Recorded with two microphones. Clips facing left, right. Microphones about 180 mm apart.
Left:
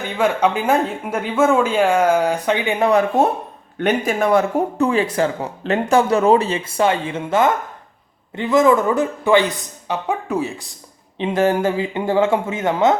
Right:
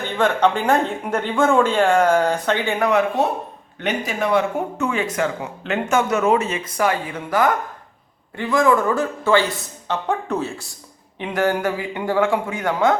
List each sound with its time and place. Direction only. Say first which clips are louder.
0.2 s speech: even; 10° left (ahead or behind)
3.2 s speech: left 4 dB; 50° left (ahead or behind); by 9.5 s 20° left (ahead or behind)
9.9 s speech: left 1 dB; 10° left (ahead or behind)
11.2 s speech: left 3 dB; 25° left (ahead or behind)